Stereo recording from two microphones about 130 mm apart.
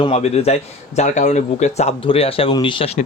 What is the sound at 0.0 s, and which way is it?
Speech, 55° left (ahead or behind).